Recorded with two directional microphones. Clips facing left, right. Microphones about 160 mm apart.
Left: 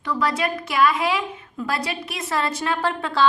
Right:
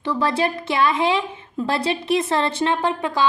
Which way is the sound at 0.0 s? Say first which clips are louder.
Right 3 dB; 25° right (ahead or behind).